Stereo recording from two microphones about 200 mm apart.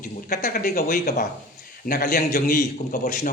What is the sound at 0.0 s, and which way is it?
Speech, 45° left (ahead or behind).